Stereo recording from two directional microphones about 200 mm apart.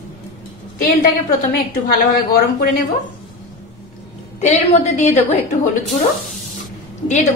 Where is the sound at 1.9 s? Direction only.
50° left (ahead or behind).